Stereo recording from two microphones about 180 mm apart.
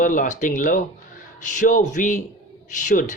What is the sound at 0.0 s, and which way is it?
Speech, 45° left (ahead or behind).